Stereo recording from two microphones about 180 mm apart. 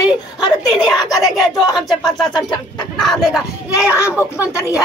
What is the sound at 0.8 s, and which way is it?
Speech, centre (ahead or behind).